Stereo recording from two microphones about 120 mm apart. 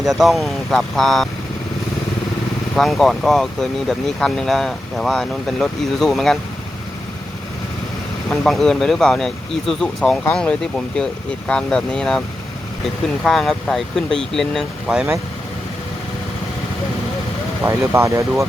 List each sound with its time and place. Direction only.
0.0 s speech: centre (ahead or behind)
2.7 s speech: centre (ahead or behind)
8.3 s speech: centre (ahead or behind)
13.2 s speech: 5° left (ahead or behind)
17.7 s speech: 25° right (ahead or behind)